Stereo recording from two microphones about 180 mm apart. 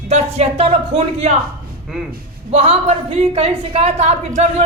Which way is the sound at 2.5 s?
35° right (ahead or behind).